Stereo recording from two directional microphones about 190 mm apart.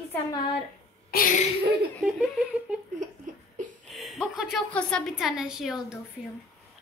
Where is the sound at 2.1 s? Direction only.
5° right (ahead or behind).